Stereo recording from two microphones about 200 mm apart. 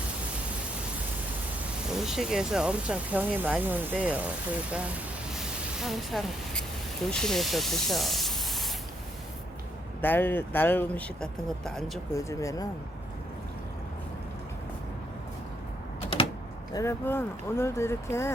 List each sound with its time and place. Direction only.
1.9 s speech: centre (ahead or behind)
5.4 s vehicle: centre (ahead or behind)
7.1 s speech: centre (ahead or behind)
10.0 s speech: 10° left (ahead or behind)
12.1 s speech: 15° left (ahead or behind)
16.7 s speech: 10° left (ahead or behind)